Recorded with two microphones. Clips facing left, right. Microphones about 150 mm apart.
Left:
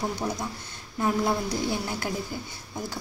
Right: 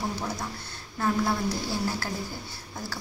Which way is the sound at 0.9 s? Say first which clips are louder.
Left 1 dB; 15° left (ahead or behind).